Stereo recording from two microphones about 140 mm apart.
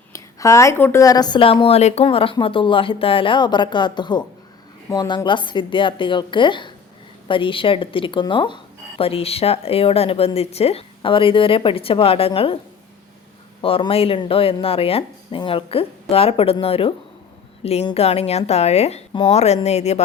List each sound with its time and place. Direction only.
0.1 s speech: 20° left (ahead or behind); by 12.5 s 40° left (ahead or behind)
13.6 s a woman's voice: 40° left (ahead or behind)